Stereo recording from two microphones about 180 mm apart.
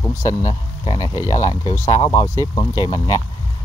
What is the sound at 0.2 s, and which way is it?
Speech, 20° left (ahead or behind).